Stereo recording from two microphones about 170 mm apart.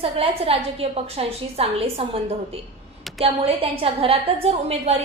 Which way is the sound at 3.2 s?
35° right (ahead or behind).